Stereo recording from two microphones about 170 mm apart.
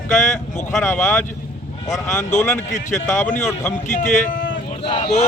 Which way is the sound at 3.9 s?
50° left (ahead or behind).